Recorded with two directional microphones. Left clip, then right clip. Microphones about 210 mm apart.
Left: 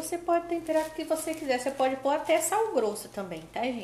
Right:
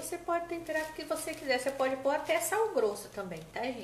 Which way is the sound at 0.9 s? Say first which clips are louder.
Left 6 dB; 30° left (ahead or behind).